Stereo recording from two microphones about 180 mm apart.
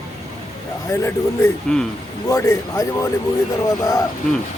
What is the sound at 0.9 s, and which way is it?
Speech, 15° left (ahead or behind).